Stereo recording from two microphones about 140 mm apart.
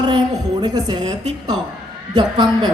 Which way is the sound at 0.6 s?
30° right (ahead or behind).